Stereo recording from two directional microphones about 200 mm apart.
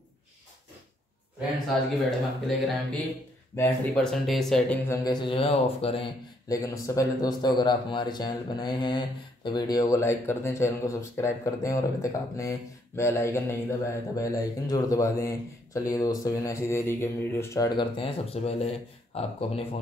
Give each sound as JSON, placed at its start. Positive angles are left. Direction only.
{"t": 2.0, "sound": "speech", "side_deg": 0}
{"t": 4.9, "sound": "speech", "side_deg": 20}
{"t": 6.5, "sound": "speech", "side_deg": 15}